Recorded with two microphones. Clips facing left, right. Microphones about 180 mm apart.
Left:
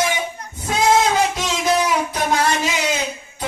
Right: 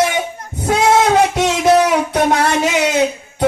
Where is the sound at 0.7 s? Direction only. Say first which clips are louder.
Right 4 dB; 65° right (ahead or behind).